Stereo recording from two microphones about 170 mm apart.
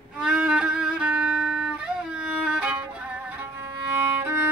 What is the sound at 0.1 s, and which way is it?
Violin, 5° right (ahead or behind).